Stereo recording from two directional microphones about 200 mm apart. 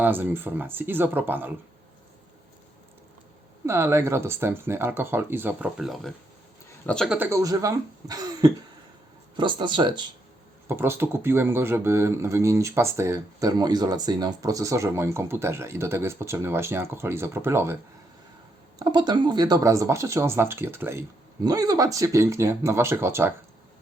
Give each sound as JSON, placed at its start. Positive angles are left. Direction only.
{"t": 0.0, "sound": "speech", "side_deg": -10}
{"t": 3.7, "sound": "speech", "side_deg": -15}
{"t": 7.2, "sound": "speech", "side_deg": -15}
{"t": 10.7, "sound": "speech", "side_deg": -10}
{"t": 18.8, "sound": "speech", "side_deg": -20}